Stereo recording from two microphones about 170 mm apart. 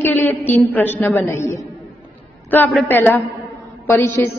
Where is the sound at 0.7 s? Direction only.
10° left (ahead or behind).